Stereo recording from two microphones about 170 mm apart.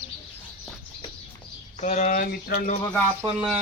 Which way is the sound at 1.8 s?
45° left (ahead or behind).